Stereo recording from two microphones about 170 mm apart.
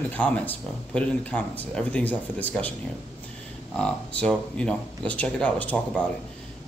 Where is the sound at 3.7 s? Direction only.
5° left (ahead or behind).